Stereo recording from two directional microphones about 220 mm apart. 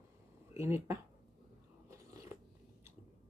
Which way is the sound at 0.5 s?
10° right (ahead or behind).